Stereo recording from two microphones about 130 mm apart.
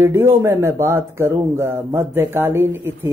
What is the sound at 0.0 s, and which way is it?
Speech, 20° right (ahead or behind).